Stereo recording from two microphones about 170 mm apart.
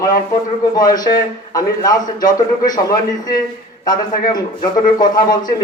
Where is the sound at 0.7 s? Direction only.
25° left (ahead or behind).